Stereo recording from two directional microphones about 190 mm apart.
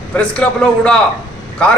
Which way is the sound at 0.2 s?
5° left (ahead or behind).